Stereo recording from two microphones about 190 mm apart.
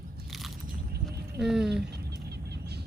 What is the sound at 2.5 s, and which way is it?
Music, 60° right (ahead or behind).